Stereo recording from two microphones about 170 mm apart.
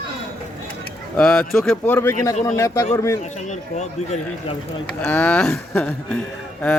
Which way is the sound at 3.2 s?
45° left (ahead or behind).